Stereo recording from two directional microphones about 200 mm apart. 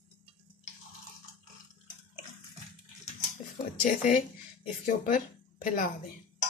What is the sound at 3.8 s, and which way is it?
Speech, 40° left (ahead or behind).